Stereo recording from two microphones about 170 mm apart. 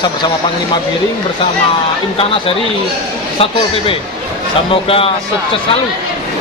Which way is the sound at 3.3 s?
35° left (ahead or behind).